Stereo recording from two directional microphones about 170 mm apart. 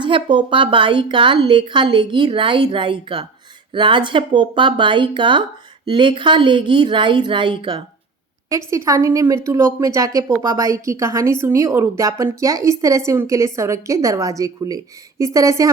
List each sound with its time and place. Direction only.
0.0 s a woman's voice: 30° right (ahead or behind)